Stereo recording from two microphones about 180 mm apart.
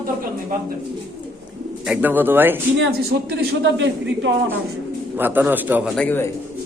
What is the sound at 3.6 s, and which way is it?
Speech, 85° right.